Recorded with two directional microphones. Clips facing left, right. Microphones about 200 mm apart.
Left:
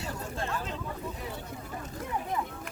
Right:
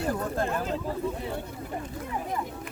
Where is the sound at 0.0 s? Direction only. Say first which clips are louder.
Right 8 dB; 55° right (ahead or behind).